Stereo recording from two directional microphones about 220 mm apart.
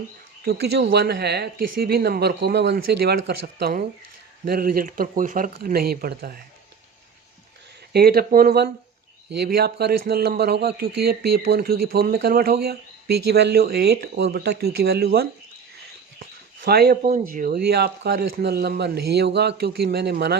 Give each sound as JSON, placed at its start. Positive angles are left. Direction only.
{"t": 0.4, "sound": "speech", "side_deg": -50}
{"t": 7.9, "sound": "speech", "side_deg": -45}